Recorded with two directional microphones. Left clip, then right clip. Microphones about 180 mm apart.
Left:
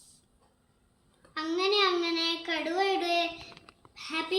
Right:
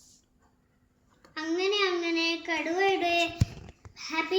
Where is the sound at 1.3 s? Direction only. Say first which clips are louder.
Left 1 dB; 10° left (ahead or behind).